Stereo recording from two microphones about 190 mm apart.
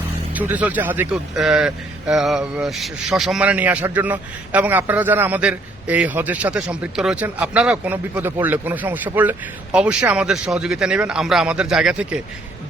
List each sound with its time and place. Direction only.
0.3 s a man's voice: 10° right (ahead or behind)